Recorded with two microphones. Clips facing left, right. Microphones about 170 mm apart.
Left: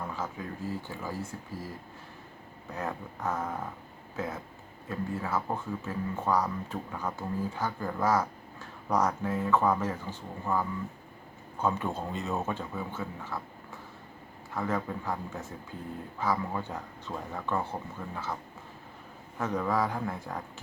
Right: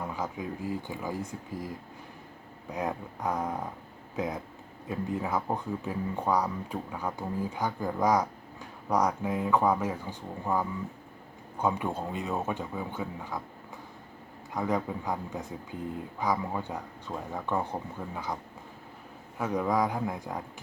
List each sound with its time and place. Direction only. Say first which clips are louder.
0.0 s speech: right 2 dB; 15° right (ahead or behind)
2.6 s speech: right 3 dB; 15° right (ahead or behind)
14.5 s speech: right 2 dB; 15° right (ahead or behind)
19.4 s speech: right 2 dB; 10° right (ahead or behind)